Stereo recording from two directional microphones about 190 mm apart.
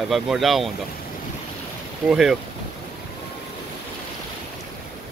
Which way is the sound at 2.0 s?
Centre (ahead or behind).